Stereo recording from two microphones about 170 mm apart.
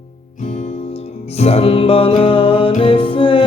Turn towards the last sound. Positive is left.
turn(degrees=30)  # may be behind; listen again after turning